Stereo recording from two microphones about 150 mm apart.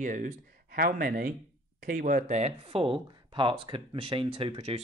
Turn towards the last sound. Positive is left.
turn(degrees=-40)  # may be behind; listen again after turning